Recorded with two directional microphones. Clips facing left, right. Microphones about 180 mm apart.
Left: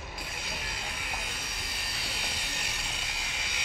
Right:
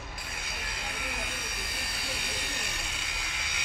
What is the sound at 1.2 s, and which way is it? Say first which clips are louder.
Vehicle: right 2 dB; 55° right (ahead or behind).